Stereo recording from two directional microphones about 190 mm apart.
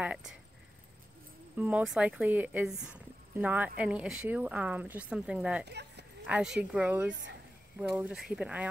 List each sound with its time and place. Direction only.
0.0 s speech: 5° right (ahead or behind)
1.6 s a woman's voice: 10° right (ahead or behind)
5.7 s dog: 60° right (ahead or behind)
6.2 s speech: 5° right (ahead or behind)
7.1 s speech: 75° right (ahead or behind)
7.9 s speech: centre (ahead or behind)